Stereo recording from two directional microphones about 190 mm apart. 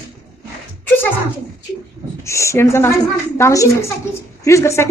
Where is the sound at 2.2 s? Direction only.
15° left (ahead or behind).